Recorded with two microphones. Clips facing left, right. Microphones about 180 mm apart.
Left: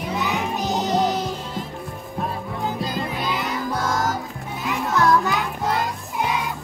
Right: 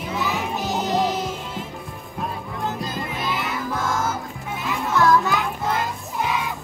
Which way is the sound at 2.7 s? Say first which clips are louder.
Left 3 dB; centre (ahead or behind).